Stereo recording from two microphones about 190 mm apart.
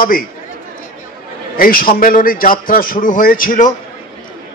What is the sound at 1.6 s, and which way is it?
A man's voice, 50° left (ahead or behind).